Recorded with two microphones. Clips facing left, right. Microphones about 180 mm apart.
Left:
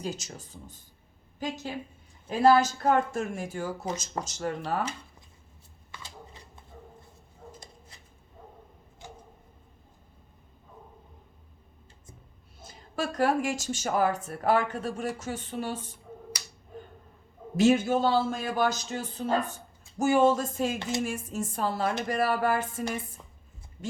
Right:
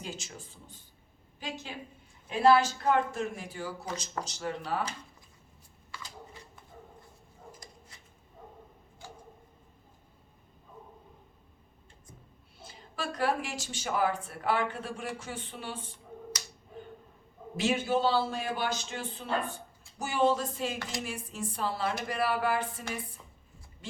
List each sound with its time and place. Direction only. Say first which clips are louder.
0.0 s speech: left 6 dB; 40° left (ahead or behind)
12.5 s speech: left 6 dB; 45° left (ahead or behind)
17.6 s speech: left 6 dB; 45° left (ahead or behind)